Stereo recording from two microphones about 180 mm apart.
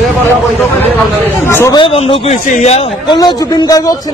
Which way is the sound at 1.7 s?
30° left (ahead or behind).